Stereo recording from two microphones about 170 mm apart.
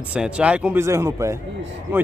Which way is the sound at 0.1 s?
5° right (ahead or behind).